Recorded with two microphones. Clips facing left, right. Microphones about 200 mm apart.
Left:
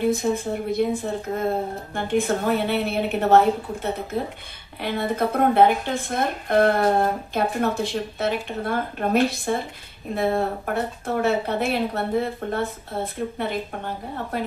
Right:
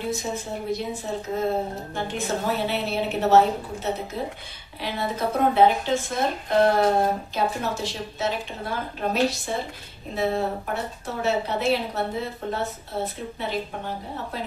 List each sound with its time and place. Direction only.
0.1 s a woman's voice: 55° left (ahead or behind)